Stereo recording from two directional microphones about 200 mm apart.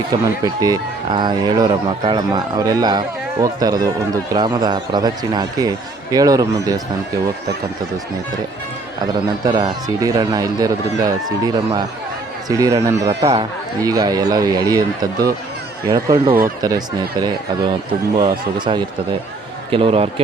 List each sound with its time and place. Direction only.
0.1 s speech: 20° right (ahead or behind)
9.4 s speech: 20° right (ahead or behind)